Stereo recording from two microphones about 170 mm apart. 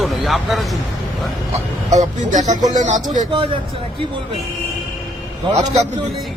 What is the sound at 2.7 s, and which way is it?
Speech, 45° right (ahead or behind).